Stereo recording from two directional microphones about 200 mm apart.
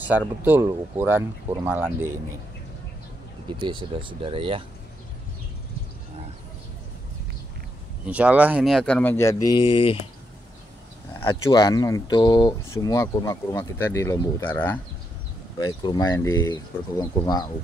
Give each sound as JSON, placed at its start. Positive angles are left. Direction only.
{"t": 0.0, "sound": "speech", "side_deg": -10}
{"t": 3.4, "sound": "speech", "side_deg": -25}
{"t": 8.1, "sound": "speech", "side_deg": -5}
{"t": 11.2, "sound": "speech", "side_deg": 20}
{"t": 15.6, "sound": "speech", "side_deg": 20}